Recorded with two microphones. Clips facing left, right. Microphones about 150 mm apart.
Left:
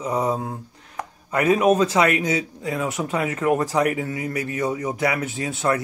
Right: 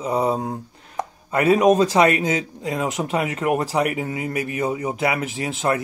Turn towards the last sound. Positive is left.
turn(degrees=-30)  # may be behind; listen again after turning